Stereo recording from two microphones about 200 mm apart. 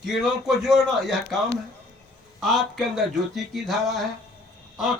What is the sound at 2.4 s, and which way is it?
Speech, centre (ahead or behind).